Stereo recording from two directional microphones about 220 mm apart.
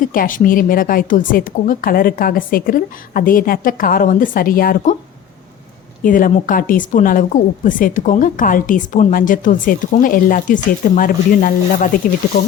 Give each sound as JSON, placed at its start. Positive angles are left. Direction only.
{"t": 0.0, "sound": "a woman's voice", "side_deg": 40}
{"t": 6.0, "sound": "a woman's voice", "side_deg": 40}